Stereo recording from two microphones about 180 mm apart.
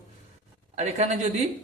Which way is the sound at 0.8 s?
35° right (ahead or behind).